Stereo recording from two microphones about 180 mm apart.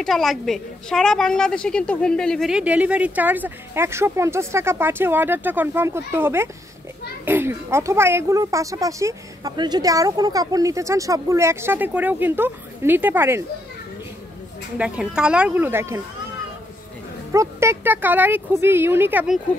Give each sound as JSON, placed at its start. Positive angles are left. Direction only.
{"t": 0.0, "sound": "a woman's voice", "side_deg": 0}
{"t": 14.8, "sound": "a woman's voice", "side_deg": -5}
{"t": 17.3, "sound": "a woman's voice", "side_deg": -15}